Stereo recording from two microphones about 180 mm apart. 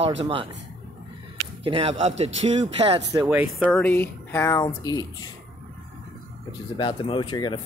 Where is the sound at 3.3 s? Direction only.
5° right (ahead or behind).